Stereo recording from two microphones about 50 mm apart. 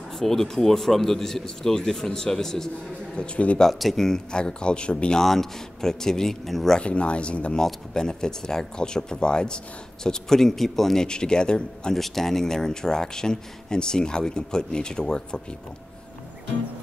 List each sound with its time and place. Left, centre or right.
0.2 s speech: centre
3.2 s speech: left
3.6 s speech: centre
5.2 s speech: centre
6.8 s speech: left
7.5 s speech: centre
11.9 s speech: centre